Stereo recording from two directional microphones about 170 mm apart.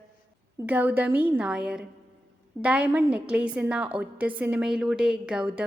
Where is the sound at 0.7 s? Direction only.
10° right (ahead or behind).